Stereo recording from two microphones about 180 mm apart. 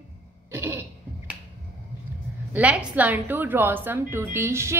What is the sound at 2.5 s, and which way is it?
A woman's voice, 10° right (ahead or behind).